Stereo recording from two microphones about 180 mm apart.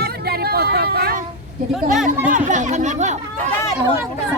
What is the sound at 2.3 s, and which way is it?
Speech, 45° right (ahead or behind).